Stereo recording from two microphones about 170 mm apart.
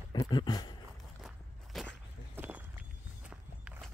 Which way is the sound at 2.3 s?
10° right (ahead or behind).